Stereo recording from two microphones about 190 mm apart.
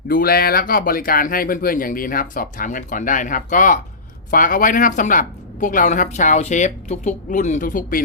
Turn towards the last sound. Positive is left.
turn(degrees=45)  # may be behind; listen again after turning